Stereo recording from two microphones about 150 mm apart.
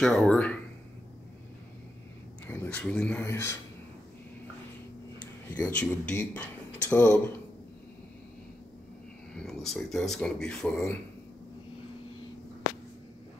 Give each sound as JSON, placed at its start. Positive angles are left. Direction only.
{"t": 0.0, "sound": "speech", "side_deg": 5}
{"t": 2.4, "sound": "speech", "side_deg": 15}
{"t": 5.7, "sound": "speech", "side_deg": 10}
{"t": 9.5, "sound": "speech", "side_deg": 0}